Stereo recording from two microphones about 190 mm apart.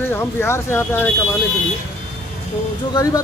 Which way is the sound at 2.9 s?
20° left (ahead or behind).